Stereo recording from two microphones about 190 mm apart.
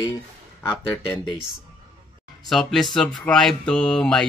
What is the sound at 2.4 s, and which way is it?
Speech, centre (ahead or behind).